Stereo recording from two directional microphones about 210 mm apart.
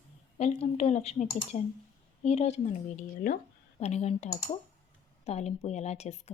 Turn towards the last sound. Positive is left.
turn(degrees=30)  # may be behind; listen again after turning